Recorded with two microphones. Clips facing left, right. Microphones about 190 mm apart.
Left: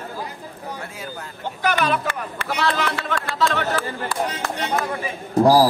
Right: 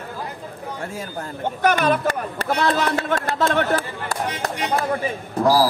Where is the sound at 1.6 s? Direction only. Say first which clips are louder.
Right 3 dB; 50° right (ahead or behind).